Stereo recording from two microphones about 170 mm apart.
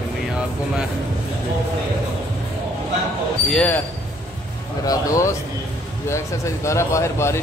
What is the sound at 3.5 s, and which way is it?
Speech, 10° left (ahead or behind).